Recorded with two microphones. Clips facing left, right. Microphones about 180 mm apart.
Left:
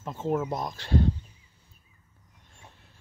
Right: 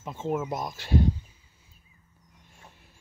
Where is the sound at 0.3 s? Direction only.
5° right (ahead or behind).